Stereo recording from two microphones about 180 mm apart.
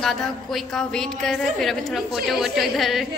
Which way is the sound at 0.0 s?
Centre (ahead or behind).